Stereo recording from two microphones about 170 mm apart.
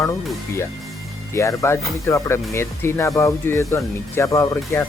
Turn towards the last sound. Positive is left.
turn(degrees=15)  # may be behind; listen again after turning